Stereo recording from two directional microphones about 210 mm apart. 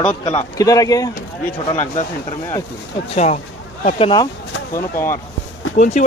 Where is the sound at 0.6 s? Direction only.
15° left (ahead or behind).